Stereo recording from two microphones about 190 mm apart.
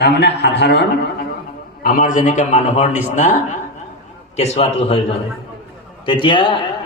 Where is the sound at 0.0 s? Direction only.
60° left (ahead or behind).